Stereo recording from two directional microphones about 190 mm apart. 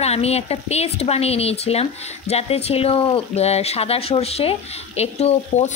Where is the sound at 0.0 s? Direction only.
35° left (ahead or behind).